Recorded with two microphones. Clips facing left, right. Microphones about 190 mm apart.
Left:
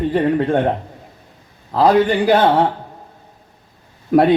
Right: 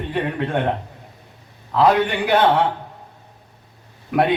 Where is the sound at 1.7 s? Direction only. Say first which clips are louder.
Left 3 dB; 35° left (ahead or behind).